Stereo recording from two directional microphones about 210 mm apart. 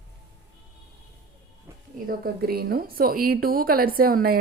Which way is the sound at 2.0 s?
45° right (ahead or behind).